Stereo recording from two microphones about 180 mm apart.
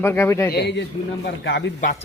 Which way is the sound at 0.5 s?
70° left (ahead or behind).